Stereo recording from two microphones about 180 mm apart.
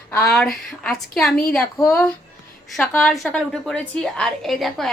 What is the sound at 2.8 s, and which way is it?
A woman's voice, 5° left (ahead or behind).